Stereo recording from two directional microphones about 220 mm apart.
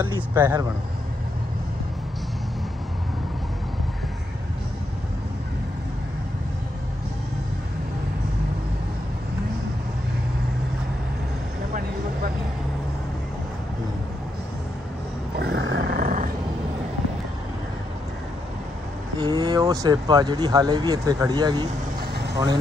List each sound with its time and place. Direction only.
0.0 s speech: 10° right (ahead or behind)
15.3 s a sound: 50° right (ahead or behind)
19.1 s speech: 15° right (ahead or behind)